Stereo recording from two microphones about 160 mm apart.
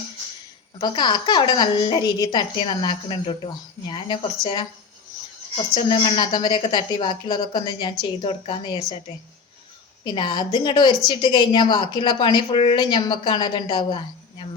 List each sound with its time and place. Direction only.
0.8 s a woman's voice: 25° left (ahead or behind)
5.7 s a woman's voice: 30° left (ahead or behind)
10.0 s a woman's voice: 30° left (ahead or behind)